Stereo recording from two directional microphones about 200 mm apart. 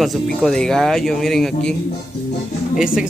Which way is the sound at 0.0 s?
Centre (ahead or behind).